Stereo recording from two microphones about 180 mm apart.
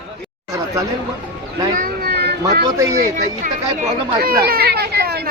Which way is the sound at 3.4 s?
45° right (ahead or behind).